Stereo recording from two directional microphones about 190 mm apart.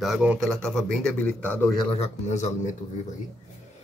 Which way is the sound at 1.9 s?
35° left (ahead or behind).